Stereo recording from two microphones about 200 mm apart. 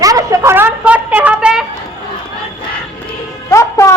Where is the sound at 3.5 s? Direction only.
15° left (ahead or behind).